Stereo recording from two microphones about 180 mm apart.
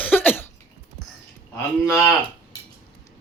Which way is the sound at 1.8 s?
20° left (ahead or behind).